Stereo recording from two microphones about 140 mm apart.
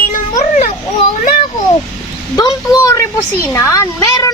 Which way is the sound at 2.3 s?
25° left (ahead or behind).